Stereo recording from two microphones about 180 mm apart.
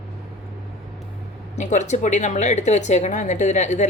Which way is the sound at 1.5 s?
40° left (ahead or behind).